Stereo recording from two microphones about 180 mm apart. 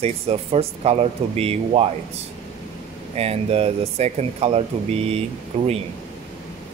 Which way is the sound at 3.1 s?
35° right (ahead or behind).